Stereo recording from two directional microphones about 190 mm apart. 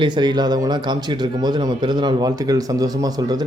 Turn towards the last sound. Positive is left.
turn(degrees=-20)  # may be behind; listen again after turning